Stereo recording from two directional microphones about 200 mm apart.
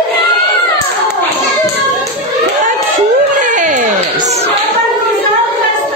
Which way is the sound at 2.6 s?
40° right (ahead or behind).